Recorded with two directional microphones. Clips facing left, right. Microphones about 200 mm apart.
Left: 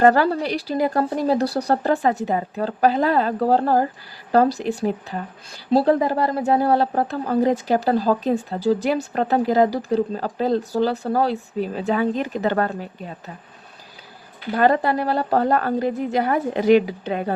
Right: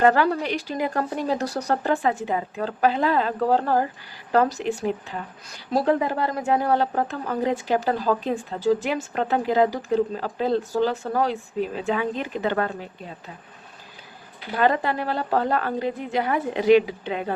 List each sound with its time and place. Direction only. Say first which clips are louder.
0.0 s a woman's voice: left 3 dB; 40° left (ahead or behind)
14.5 s a woman's voice: left 4 dB; 40° left (ahead or behind)